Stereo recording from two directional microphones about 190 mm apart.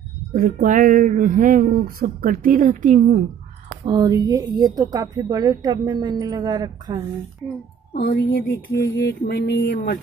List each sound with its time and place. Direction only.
0.3 s speech: 45° right (ahead or behind)
3.8 s speech: 20° right (ahead or behind)
7.9 s music: 60° left (ahead or behind)